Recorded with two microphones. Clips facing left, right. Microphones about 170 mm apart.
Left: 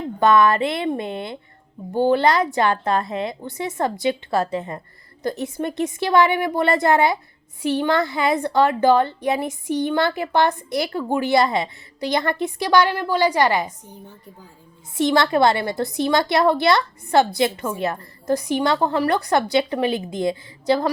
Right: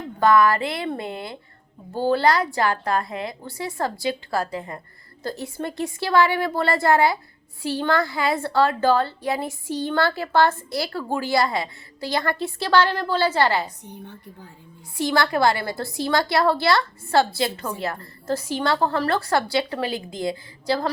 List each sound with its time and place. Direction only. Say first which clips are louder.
0.2 s a woman's voice: left 1 dB; 20° left (ahead or behind)
14.9 s a woman's voice: left 4 dB; 20° left (ahead or behind)